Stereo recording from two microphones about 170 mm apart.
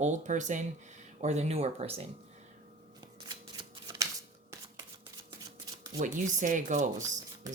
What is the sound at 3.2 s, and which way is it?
Shuffling cards, 25° right (ahead or behind).